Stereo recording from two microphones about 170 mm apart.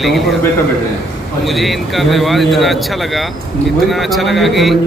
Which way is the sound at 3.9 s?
Centre (ahead or behind).